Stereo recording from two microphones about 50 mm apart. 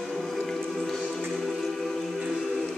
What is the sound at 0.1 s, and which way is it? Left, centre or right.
Music, centre.